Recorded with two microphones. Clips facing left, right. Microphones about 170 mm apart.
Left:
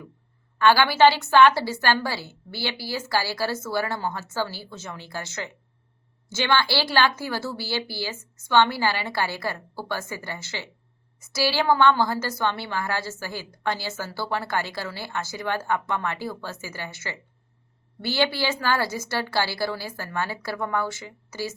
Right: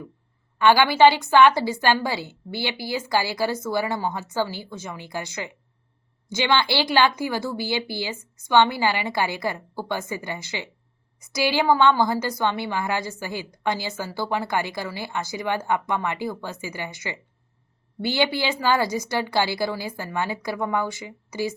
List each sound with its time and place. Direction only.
0.6 s a woman's voice: 15° right (ahead or behind)